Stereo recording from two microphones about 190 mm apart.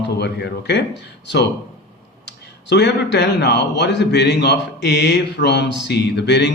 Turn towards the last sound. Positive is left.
turn(degrees=65)  # may be behind; listen again after turning